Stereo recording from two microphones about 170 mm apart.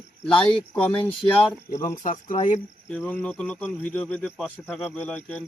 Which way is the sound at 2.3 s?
45° left (ahead or behind).